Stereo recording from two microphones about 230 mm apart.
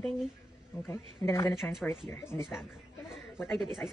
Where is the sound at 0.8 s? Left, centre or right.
Centre.